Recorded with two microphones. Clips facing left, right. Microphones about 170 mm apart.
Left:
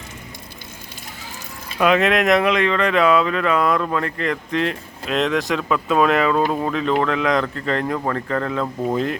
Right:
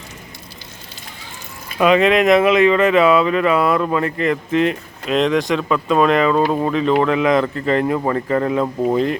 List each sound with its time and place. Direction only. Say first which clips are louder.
1.8 s speech: right 3 dB; centre (ahead or behind)